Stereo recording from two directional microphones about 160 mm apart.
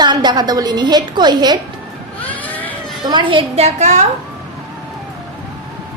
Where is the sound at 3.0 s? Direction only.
30° right (ahead or behind); by 4.1 s 45° right (ahead or behind).